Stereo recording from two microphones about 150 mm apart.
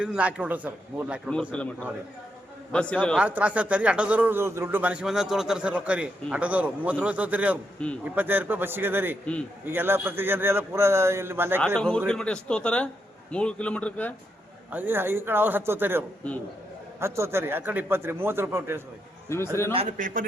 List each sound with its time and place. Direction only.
0.0 s speech: 10° right (ahead or behind)
1.5 s a man's voice: 10° left (ahead or behind)
3.2 s speech: 10° right (ahead or behind)
7.8 s a man's voice: 5° left (ahead or behind)
8.1 s speech: 10° right (ahead or behind)
11.6 s a man's voice: 5° left (ahead or behind)
14.7 s speech: 15° right (ahead or behind)
19.3 s a man's voice: 15° left (ahead or behind)
20.0 s a man's voice: 65° right (ahead or behind)